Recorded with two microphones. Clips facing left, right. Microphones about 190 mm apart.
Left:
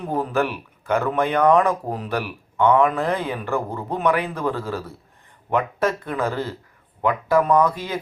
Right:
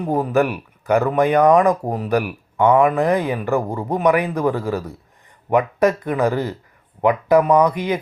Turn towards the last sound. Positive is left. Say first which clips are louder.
# right 3 dB
turn(degrees=-15)  # may be behind; listen again after turning